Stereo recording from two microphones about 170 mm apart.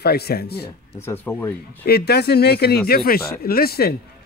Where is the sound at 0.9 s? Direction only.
15° left (ahead or behind).